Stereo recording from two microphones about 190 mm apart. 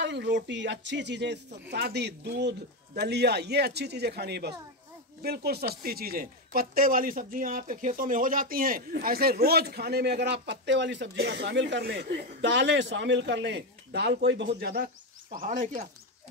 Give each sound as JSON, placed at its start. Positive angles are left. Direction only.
{"t": 0.0, "sound": "speech", "side_deg": -65}
{"t": 15.3, "sound": "speech", "side_deg": -45}